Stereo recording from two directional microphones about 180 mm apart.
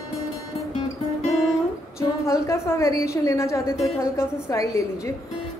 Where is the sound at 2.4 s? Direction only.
15° left (ahead or behind).